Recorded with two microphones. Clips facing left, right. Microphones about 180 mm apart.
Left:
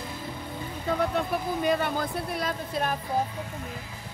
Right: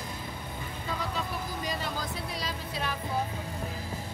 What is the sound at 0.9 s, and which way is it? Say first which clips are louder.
Speech: left 9 dB; 60° left (ahead or behind).